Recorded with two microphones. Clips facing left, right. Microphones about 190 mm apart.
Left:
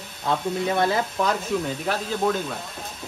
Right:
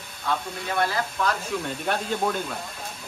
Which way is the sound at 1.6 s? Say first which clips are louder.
Left 1 dB; centre (ahead or behind).